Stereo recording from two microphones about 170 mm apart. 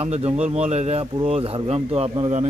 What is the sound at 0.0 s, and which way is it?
Speech, 40° right (ahead or behind).